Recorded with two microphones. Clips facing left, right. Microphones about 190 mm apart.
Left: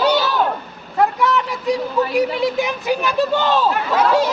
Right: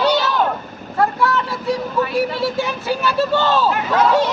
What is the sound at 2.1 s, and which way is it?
Speech, 15° left (ahead or behind).